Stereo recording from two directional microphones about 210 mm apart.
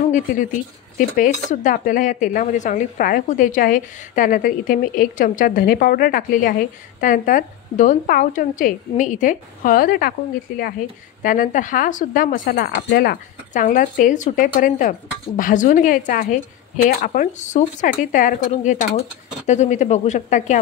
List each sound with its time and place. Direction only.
0.1 s speech: 40° left (ahead or behind)
11.2 s speech: 40° left (ahead or behind)